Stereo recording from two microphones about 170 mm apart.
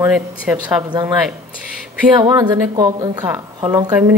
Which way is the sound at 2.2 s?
25° right (ahead or behind).